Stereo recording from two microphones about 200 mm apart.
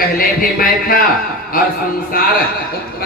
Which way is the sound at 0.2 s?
45° left (ahead or behind).